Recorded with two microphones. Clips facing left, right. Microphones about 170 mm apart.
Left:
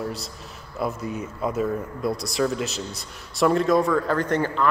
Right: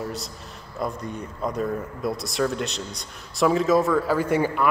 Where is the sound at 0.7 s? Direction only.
5° left (ahead or behind).